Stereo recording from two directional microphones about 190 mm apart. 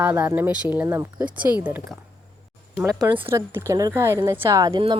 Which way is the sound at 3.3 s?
15° right (ahead or behind).